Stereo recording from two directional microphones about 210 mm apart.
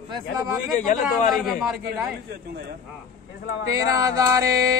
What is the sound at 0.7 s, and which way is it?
Speech, 35° left (ahead or behind).